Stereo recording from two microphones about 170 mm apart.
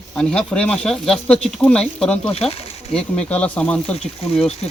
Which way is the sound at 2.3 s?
35° left (ahead or behind).